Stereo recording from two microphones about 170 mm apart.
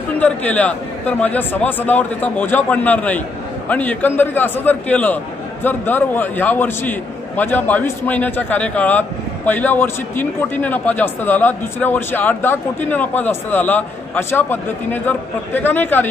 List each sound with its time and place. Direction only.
0.2 s a man's voice: 10° left (ahead or behind)